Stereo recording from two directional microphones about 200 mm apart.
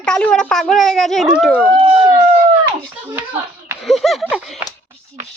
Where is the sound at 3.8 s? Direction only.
Centre (ahead or behind).